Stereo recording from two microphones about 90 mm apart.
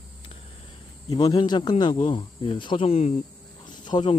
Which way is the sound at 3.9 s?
60° left (ahead or behind).